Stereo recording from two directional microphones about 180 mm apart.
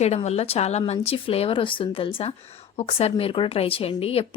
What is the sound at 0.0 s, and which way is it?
Speech, 35° left (ahead or behind).